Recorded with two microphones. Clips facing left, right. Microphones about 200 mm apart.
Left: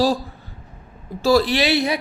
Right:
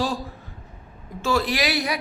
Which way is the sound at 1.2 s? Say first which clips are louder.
Left 6 dB; 35° left (ahead or behind).